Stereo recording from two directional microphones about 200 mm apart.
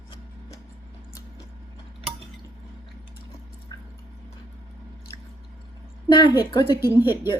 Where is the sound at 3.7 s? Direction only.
20° left (ahead or behind).